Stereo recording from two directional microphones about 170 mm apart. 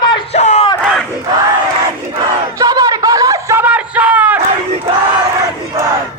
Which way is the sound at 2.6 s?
20° right (ahead or behind).